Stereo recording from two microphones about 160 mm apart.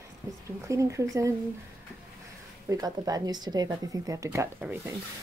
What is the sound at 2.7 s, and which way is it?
Speech, 25° right (ahead or behind).